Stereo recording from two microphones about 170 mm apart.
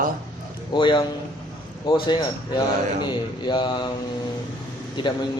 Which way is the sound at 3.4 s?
25° left (ahead or behind).